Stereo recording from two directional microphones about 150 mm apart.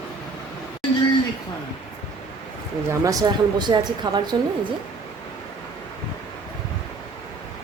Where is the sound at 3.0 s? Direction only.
25° right (ahead or behind).